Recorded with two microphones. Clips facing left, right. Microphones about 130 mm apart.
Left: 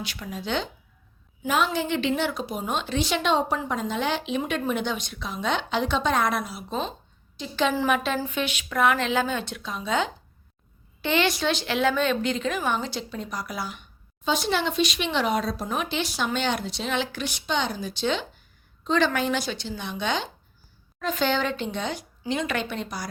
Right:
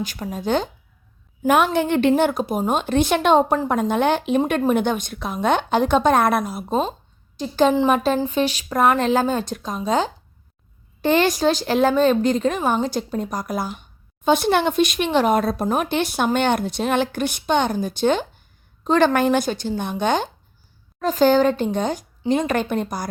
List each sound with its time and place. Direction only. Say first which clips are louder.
0.0 s a woman's voice: right 7 dB; 45° right (ahead or behind)
1.5 s a woman's voice: right 7 dB; 60° right (ahead or behind)